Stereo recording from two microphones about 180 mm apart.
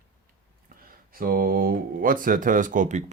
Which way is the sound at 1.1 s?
55° right (ahead or behind).